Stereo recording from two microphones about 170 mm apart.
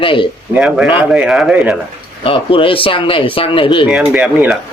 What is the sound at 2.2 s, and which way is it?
Speech, 35° left (ahead or behind).